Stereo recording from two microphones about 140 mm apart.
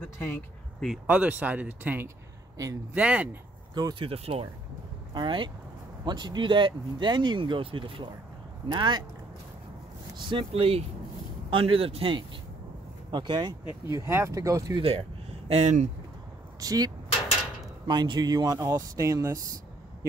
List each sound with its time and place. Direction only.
0.0 s a sound: 15° left (ahead or behind)
1.0 s speech: 10° right (ahead or behind)
2.5 s a man's voice: 25° right (ahead or behind)
2.9 s speech: 10° right (ahead or behind)
3.7 s speech: 30° right (ahead or behind)
4.1 s speech: 45° right (ahead or behind)
10.1 s speech: 35° right (ahead or behind)
13.8 s speech: 20° right (ahead or behind)
14.8 s speech: 45° right (ahead or behind)
16.5 s speech: 25° right (ahead or behind)